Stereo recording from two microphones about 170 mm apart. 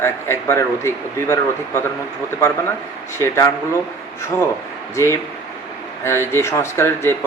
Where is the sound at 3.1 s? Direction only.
15° left (ahead or behind).